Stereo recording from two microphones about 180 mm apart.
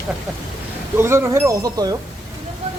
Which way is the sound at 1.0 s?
15° right (ahead or behind).